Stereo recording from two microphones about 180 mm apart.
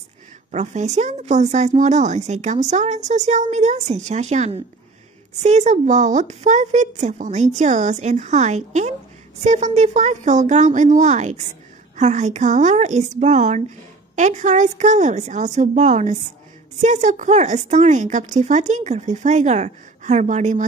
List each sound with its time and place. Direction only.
0.5 s speech: 40° right (ahead or behind)